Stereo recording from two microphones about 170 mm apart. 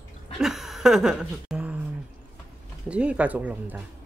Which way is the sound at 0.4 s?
Centre (ahead or behind).